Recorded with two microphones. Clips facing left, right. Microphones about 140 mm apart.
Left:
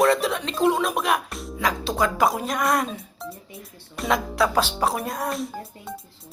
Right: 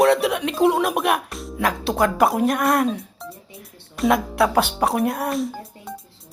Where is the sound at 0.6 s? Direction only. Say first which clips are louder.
Right 3 dB; 65° right (ahead or behind).